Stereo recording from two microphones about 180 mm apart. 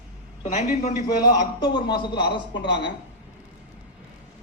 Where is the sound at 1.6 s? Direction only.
25° left (ahead or behind).